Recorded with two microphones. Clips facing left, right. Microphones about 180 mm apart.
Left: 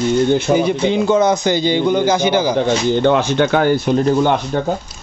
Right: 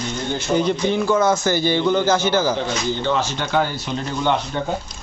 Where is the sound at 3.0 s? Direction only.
60° left (ahead or behind).